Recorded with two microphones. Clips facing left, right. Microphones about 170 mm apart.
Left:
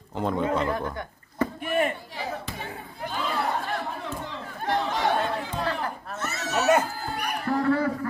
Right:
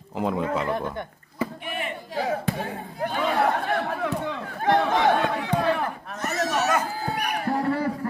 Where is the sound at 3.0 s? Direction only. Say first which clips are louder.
Right 6 dB; 60° right (ahead or behind).